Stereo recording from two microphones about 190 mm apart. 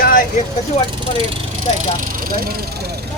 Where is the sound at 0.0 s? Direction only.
50° left (ahead or behind).